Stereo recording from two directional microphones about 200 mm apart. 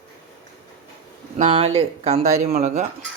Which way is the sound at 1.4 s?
30° right (ahead or behind).